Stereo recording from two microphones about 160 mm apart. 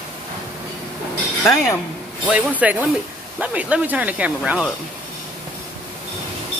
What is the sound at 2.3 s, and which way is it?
Speech, 10° right (ahead or behind).